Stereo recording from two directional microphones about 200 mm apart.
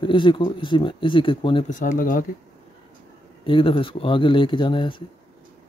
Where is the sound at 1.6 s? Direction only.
40° left (ahead or behind).